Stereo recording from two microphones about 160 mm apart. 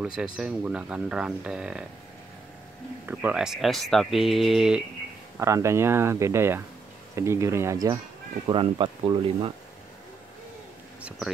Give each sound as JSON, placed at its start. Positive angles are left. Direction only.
{"t": 0.0, "sound": "speech", "side_deg": -5}
{"t": 3.1, "sound": "speech", "side_deg": -10}
{"t": 5.4, "sound": "speech", "side_deg": -20}
{"t": 11.0, "sound": "speech", "side_deg": -5}